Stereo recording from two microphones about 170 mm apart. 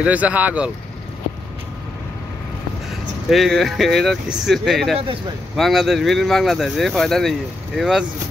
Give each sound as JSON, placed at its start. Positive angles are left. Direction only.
{"t": 0.0, "sound": "speech", "side_deg": -10}
{"t": 3.3, "sound": "speech", "side_deg": 0}
{"t": 4.9, "sound": "speech", "side_deg": -35}
{"t": 5.6, "sound": "speech", "side_deg": 0}